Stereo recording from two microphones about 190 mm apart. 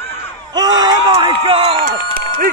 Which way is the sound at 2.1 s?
50° right (ahead or behind).